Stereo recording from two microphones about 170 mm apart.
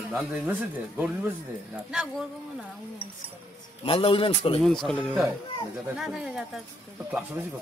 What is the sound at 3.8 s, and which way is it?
Speech, 30° left (ahead or behind).